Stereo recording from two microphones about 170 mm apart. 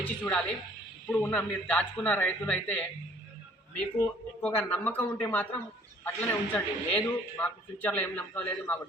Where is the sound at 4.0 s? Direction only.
10° left (ahead or behind).